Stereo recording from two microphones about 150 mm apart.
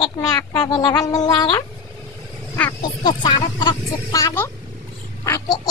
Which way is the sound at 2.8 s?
30° left (ahead or behind).